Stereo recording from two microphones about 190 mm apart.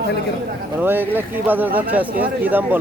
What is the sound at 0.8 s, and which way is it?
Speech, 10° right (ahead or behind).